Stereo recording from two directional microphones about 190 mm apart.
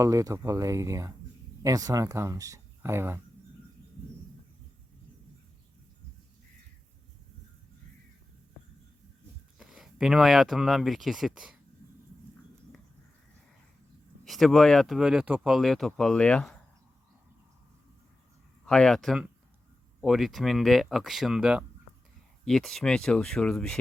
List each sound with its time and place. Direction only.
0.0 s speech: 15° right (ahead or behind)
9.6 s speech: centre (ahead or behind)
14.3 s speech: centre (ahead or behind)
18.6 s speech: 5° left (ahead or behind)